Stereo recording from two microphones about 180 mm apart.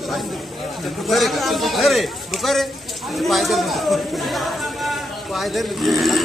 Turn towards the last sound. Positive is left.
turn(degrees=0)  # may be behind; listen again after turning